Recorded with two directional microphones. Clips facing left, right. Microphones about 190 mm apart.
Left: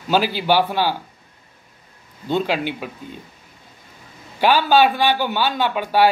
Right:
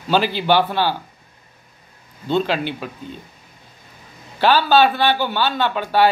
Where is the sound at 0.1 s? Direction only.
10° left (ahead or behind).